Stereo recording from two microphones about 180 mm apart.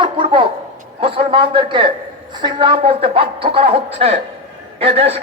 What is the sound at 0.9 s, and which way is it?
A man's voice, 30° right (ahead or behind).